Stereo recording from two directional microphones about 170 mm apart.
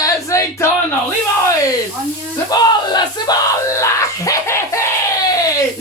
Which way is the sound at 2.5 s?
25° left (ahead or behind).